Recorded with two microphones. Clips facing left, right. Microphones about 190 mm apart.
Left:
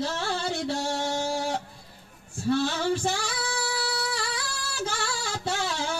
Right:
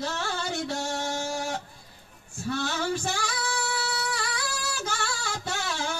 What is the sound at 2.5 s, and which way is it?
Female singing, 30° left (ahead or behind).